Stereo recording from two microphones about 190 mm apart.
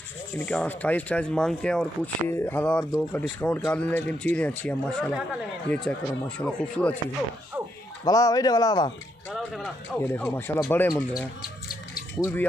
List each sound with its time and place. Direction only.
0.5 s speech: 10° left (ahead or behind)
8.0 s speech: 20° left (ahead or behind)
9.3 s speech: 5° left (ahead or behind)